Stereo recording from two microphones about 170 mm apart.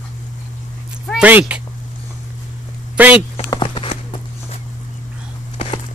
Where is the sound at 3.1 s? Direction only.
30° left (ahead or behind).